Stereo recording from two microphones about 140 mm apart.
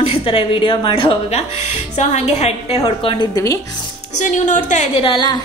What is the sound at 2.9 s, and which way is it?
Speech, 40° left (ahead or behind).